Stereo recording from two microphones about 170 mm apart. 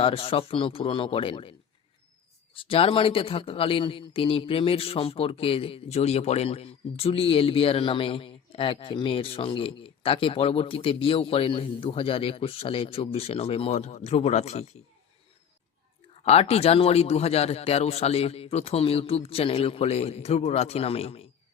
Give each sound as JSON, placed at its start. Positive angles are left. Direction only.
{"t": 0.0, "sound": "speech", "side_deg": 35}
{"t": 16.2, "sound": "speech", "side_deg": 35}